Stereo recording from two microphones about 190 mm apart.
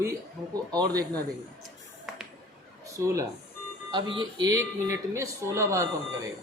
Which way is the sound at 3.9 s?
25° right (ahead or behind).